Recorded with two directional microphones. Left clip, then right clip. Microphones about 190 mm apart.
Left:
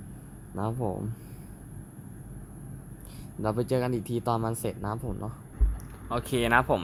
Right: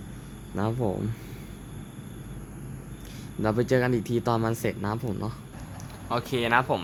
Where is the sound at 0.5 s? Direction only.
10° left (ahead or behind).